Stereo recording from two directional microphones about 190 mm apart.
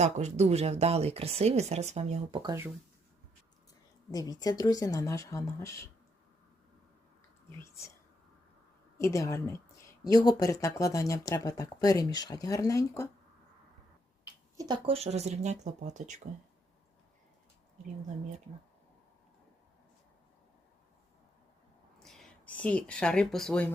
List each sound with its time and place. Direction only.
0.0 s speech: 35° right (ahead or behind)
4.1 s speech: 20° left (ahead or behind)
7.6 s speech: 15° left (ahead or behind)
9.0 s speech: 15° left (ahead or behind)
14.5 s speech: 20° right (ahead or behind); by 16.2 s 40° right (ahead or behind)
21.9 s speech: centre (ahead or behind)